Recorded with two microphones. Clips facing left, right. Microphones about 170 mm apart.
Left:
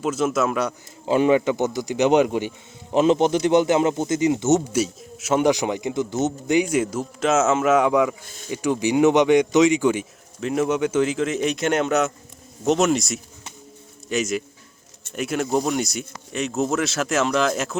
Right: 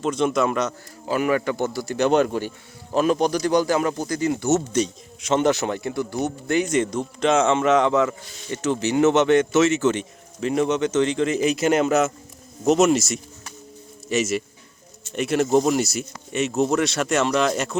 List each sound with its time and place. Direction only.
0.0 s speech: 5° left (ahead or behind)
1.0 s a man's voice: 25° left (ahead or behind)
4.7 s speech: 10° left (ahead or behind)